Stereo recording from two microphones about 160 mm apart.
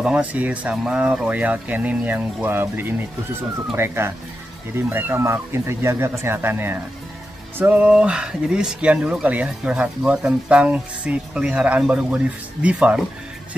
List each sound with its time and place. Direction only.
0.0 s speech: 5° right (ahead or behind)